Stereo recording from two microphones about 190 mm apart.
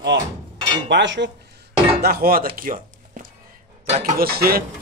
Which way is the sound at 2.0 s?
55° right (ahead or behind).